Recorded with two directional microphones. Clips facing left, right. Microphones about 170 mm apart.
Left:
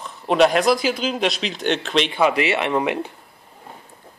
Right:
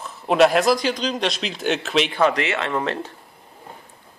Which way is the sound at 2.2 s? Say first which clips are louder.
Left 4 dB; 15° left (ahead or behind).